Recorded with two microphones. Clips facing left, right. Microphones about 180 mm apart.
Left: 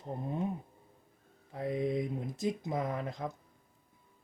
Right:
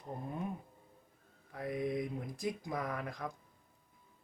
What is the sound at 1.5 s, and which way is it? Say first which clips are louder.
Speech: left 4 dB; 25° left (ahead or behind).